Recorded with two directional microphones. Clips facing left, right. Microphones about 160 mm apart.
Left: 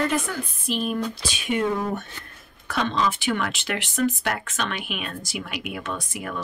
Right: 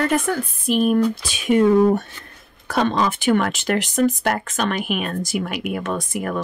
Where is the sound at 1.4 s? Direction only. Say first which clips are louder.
Right 10 dB; 35° right (ahead or behind).